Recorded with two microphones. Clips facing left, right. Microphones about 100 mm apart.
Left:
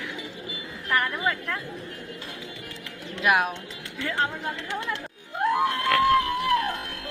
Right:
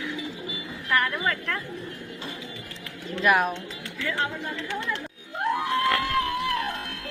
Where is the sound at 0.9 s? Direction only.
15° left (ahead or behind).